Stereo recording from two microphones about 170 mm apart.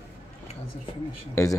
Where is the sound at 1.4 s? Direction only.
15° left (ahead or behind).